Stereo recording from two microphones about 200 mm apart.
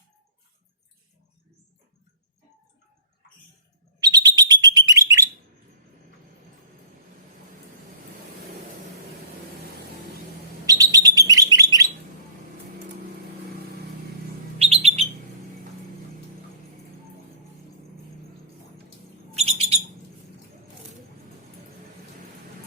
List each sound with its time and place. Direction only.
4.0 s alarm: 20° right (ahead or behind)
10.7 s bird: 20° right (ahead or behind)
14.6 s bird: 30° right (ahead or behind)
19.4 s bird: 30° right (ahead or behind)